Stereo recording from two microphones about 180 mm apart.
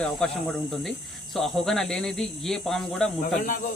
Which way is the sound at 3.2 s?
50° left (ahead or behind).